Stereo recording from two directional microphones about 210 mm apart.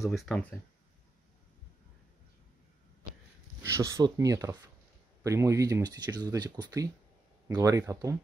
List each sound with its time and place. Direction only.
0.0 s speech: centre (ahead or behind)
3.6 s speech: 15° right (ahead or behind)